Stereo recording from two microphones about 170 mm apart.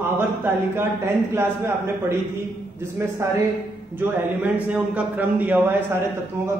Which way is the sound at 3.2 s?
15° right (ahead or behind).